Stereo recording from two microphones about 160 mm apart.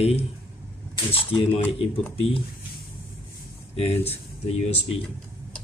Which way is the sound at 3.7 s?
40° left (ahead or behind).